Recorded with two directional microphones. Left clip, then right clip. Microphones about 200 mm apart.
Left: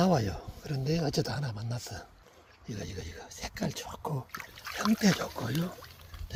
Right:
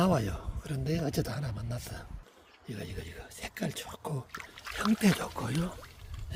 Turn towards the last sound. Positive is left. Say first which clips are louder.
# left 1 dB
turn(degrees=-10)  # may be behind; listen again after turning